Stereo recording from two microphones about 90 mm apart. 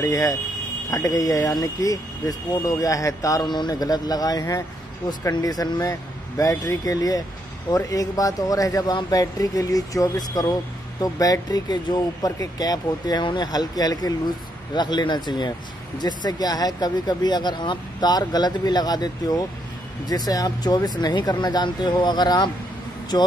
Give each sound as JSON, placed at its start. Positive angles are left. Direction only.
{"t": 0.0, "sound": "speech", "side_deg": 40}
{"t": 3.4, "sound": "speech", "side_deg": 55}